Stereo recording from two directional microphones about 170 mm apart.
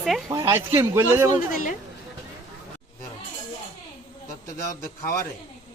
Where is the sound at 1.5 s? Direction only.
50° left (ahead or behind).